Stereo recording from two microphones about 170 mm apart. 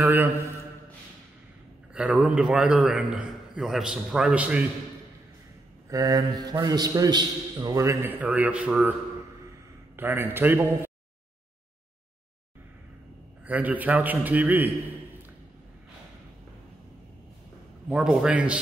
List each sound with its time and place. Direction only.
0.0 s a man's voice: 10° right (ahead or behind)
2.0 s a man's voice: 5° right (ahead or behind)
5.9 s a man's voice: 20° right (ahead or behind)
9.9 s a man's voice: 10° right (ahead or behind)
13.5 s a man's voice: 10° right (ahead or behind)
17.8 s a man's voice: 5° right (ahead or behind)